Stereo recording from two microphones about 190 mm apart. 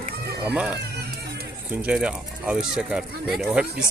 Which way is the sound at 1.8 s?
5° right (ahead or behind).